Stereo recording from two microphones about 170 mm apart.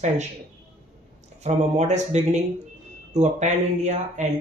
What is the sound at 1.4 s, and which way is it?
Speech, 40° right (ahead or behind).